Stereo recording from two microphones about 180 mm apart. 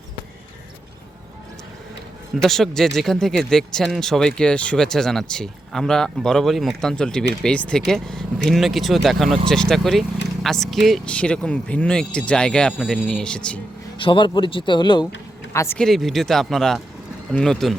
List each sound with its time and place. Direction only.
2.4 s speech: centre (ahead or behind)
14.0 s speech: 25° left (ahead or behind)
15.8 s speech: centre (ahead or behind)